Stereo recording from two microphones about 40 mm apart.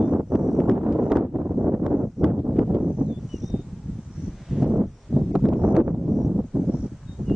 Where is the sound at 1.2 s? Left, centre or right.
Right.